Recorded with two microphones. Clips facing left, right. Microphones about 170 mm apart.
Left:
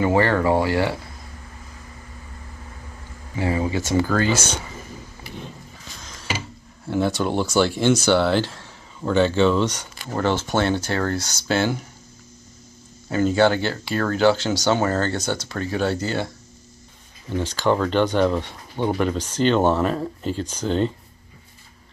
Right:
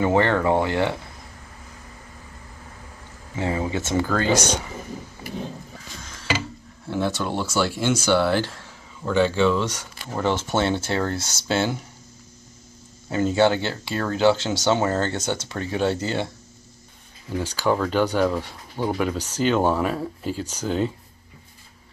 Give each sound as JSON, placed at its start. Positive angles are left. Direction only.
{"t": 0.0, "sound": "speech", "side_deg": 5}
{"t": 3.5, "sound": "speech", "side_deg": 10}
{"t": 4.2, "sound": "speech", "side_deg": -15}
{"t": 6.9, "sound": "speech", "side_deg": 0}
{"t": 10.2, "sound": "speech", "side_deg": -20}
{"t": 13.1, "sound": "speech", "side_deg": -20}
{"t": 17.3, "sound": "speech", "side_deg": -10}